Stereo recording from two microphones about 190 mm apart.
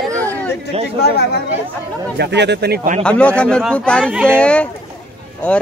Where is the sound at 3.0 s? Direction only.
5° left (ahead or behind).